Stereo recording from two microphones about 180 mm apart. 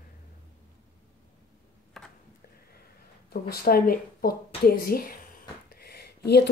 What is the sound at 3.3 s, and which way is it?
Speech, 60° left (ahead or behind).